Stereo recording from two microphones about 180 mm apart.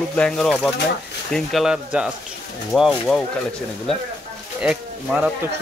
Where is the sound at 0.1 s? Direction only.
5° left (ahead or behind).